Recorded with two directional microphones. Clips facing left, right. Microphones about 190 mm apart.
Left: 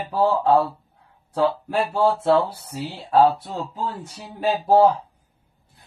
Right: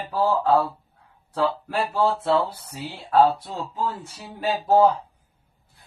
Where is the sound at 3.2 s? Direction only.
10° left (ahead or behind).